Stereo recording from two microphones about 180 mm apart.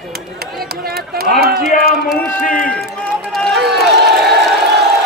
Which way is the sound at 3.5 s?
65° right (ahead or behind).